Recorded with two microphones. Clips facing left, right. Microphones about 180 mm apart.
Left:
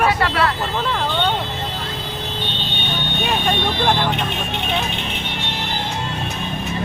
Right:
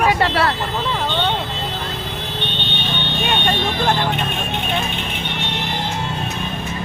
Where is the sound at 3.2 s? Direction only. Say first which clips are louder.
Even; centre (ahead or behind).